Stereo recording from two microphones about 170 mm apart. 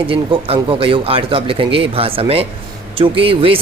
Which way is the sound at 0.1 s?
35° right (ahead or behind).